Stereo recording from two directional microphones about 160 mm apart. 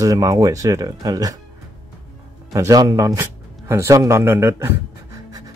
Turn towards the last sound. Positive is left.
turn(degrees=-15)  # may be behind; listen again after turning